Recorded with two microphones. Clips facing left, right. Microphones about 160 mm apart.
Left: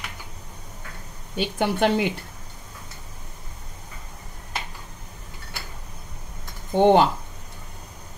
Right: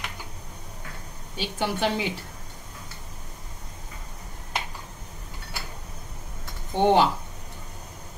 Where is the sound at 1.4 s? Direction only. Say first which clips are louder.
Left 5 dB; 55° left (ahead or behind).